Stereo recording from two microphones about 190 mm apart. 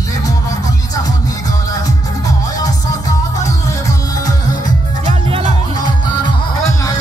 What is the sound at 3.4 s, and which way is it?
Music, 20° left (ahead or behind).